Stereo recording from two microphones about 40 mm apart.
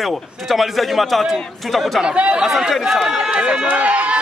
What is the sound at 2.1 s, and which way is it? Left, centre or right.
Speech, right.